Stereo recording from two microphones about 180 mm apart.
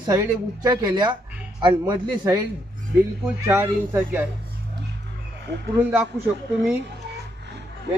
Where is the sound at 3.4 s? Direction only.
15° right (ahead or behind).